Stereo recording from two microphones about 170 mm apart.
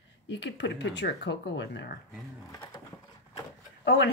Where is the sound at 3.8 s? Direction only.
85° left.